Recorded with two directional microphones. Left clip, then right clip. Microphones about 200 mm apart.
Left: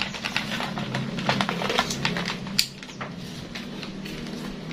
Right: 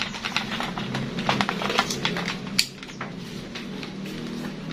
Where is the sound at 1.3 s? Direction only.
Centre (ahead or behind).